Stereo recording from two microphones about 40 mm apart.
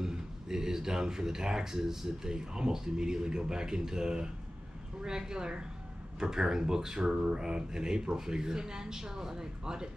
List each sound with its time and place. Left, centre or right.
0.0 s speech: centre